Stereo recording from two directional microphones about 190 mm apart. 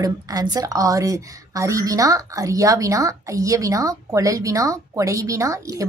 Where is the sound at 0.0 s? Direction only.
20° right (ahead or behind).